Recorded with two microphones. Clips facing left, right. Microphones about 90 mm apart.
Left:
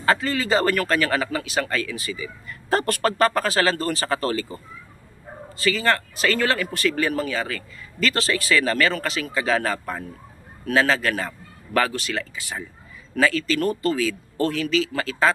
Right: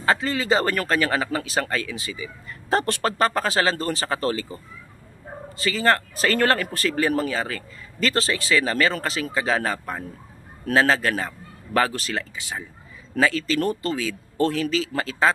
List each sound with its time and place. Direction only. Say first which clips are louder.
0.0 s speech: left 1 dB; 20° right (ahead or behind)
5.6 s speech: right 1 dB; 30° right (ahead or behind)
10.7 s speech: right 1 dB; 30° right (ahead or behind)
12.4 s speech: even; 20° right (ahead or behind)